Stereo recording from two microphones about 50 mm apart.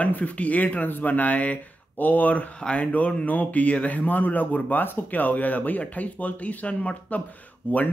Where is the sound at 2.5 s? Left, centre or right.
Left.